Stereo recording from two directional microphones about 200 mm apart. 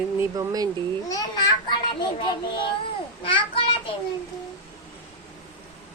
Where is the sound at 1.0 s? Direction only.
20° left (ahead or behind).